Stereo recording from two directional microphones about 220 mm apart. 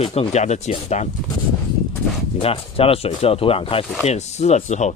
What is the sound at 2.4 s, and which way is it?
Speech, 25° left (ahead or behind).